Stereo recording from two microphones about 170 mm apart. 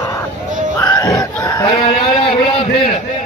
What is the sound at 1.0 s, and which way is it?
Chicken, 20° left (ahead or behind).